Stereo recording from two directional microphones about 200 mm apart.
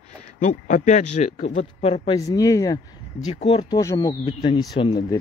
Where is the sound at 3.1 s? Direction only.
35° left (ahead or behind).